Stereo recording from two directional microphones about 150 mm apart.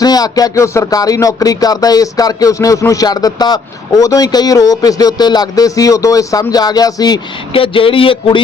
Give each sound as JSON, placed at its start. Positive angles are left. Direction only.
{"t": 0.0, "sound": "speech", "side_deg": 25}